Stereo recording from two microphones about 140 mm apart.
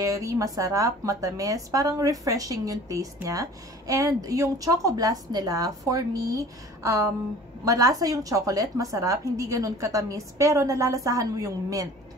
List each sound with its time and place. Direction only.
0.0 s speech: 25° right (ahead or behind)